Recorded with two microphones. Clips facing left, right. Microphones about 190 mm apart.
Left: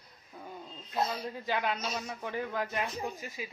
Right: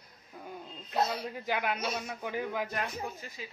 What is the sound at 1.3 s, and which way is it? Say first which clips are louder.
Speech: even; 10° right (ahead or behind).